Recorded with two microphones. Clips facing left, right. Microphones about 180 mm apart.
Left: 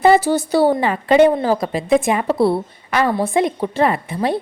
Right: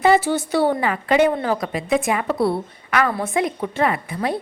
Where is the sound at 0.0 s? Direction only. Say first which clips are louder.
Left 3 dB; 35° left (ahead or behind).